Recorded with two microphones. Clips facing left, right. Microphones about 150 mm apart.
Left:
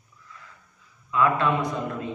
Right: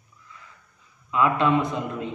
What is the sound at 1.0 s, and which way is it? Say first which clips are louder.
Speech: even; 20° right (ahead or behind).